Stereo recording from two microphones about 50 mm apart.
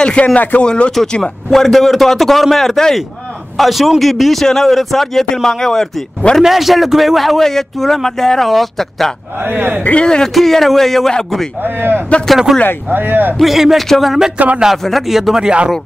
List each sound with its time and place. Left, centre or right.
0.0 s speech: left
0.4 s speech: left
0.7 s speech: left
1.5 s speech: centre
6.4 s speech: centre
9.4 s a man's voice: right
10.0 s speech: centre
10.3 s speech: centre
11.6 s a man's voice: right
12.5 s speech: centre
12.9 s a man's voice: right
13.4 s speech: centre